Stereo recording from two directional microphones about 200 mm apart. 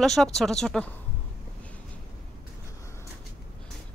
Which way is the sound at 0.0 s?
Centre (ahead or behind).